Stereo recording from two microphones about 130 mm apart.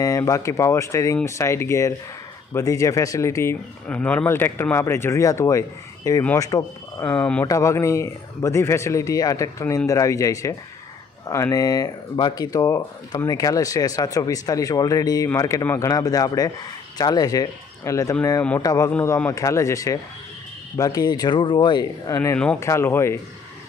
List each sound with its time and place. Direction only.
0.0 s speech: 25° left (ahead or behind)
3.8 s speech: 10° left (ahead or behind)
7.1 s speech: 10° left (ahead or behind)
7.4 s speech: 25° left (ahead or behind)
18.9 s speech: 15° left (ahead or behind)